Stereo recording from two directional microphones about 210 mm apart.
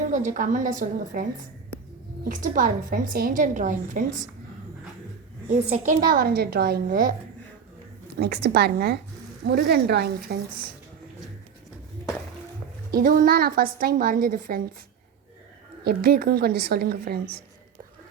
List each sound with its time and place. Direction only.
0.1 s a woman's voice: 35° right (ahead or behind)
5.6 s a woman's voice: 35° right (ahead or behind)
8.2 s a woman's voice: 50° right (ahead or behind)
12.9 s a woman's voice: 40° right (ahead or behind)
15.8 s a woman's voice: 45° right (ahead or behind)